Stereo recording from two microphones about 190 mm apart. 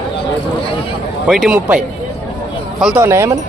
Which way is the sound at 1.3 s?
5° right (ahead or behind).